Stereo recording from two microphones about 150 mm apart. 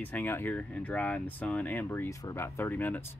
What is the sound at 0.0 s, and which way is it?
Speech, 10° left (ahead or behind).